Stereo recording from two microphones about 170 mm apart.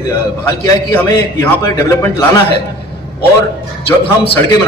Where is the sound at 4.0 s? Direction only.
30° left (ahead or behind).